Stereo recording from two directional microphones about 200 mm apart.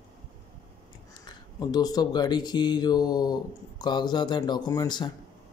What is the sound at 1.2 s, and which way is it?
Speech, 20° left (ahead or behind).